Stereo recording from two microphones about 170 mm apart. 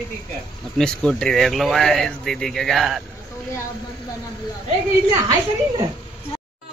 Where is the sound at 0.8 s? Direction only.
5° left (ahead or behind).